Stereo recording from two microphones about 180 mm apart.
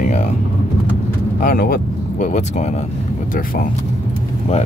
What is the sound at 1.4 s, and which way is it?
Speech, 55° left (ahead or behind).